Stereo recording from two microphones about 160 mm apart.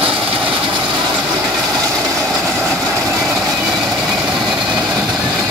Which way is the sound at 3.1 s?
15° right (ahead or behind).